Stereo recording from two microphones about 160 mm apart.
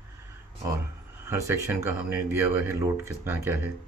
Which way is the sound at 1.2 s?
20° right (ahead or behind).